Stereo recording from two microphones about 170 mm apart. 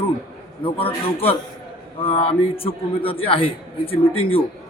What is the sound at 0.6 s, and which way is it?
A man's voice, 35° left (ahead or behind).